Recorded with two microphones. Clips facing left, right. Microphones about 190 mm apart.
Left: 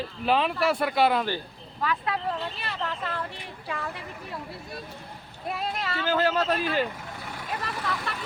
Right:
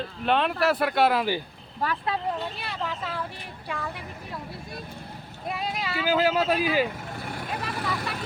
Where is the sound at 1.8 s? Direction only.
30° right (ahead or behind).